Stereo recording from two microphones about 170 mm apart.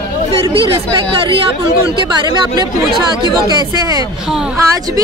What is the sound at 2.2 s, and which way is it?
Speech, 25° right (ahead or behind).